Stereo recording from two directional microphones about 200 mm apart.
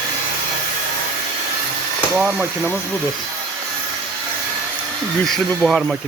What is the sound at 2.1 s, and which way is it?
Speech, 5° right (ahead or behind).